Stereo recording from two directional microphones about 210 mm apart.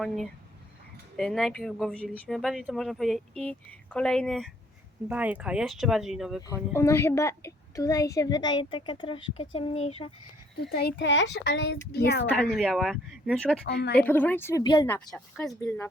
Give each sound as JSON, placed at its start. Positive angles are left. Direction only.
{"t": 1.1, "sound": "speech", "side_deg": 0}
{"t": 6.5, "sound": "a child's voice", "side_deg": 15}
{"t": 10.6, "sound": "speech", "side_deg": 50}
{"t": 12.5, "sound": "speech", "side_deg": 0}
{"t": 13.7, "sound": "speech", "side_deg": 50}
{"t": 14.0, "sound": "speech", "side_deg": 10}
{"t": 14.8, "sound": "speech", "side_deg": 5}